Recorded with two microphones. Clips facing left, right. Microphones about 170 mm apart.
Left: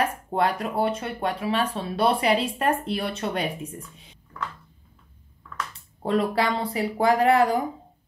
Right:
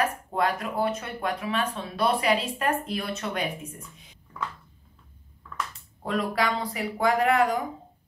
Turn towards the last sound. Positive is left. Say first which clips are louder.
# left 3 dB
turn(degrees=30)  # may be behind; listen again after turning